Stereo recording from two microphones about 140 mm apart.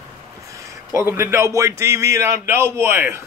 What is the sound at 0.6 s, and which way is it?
Speech, 20° right (ahead or behind).